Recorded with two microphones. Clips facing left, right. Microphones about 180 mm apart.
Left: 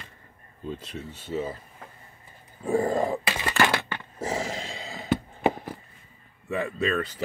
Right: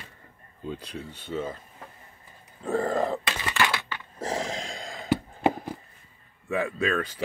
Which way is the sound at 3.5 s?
45° left (ahead or behind).